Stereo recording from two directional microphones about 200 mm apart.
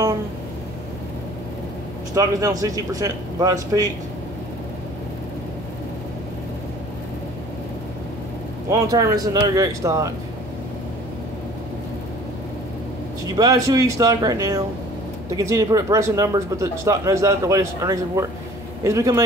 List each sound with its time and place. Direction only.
2.1 s speech: 15° right (ahead or behind)
8.6 s speech: 15° right (ahead or behind)
13.4 s speech: 15° right (ahead or behind)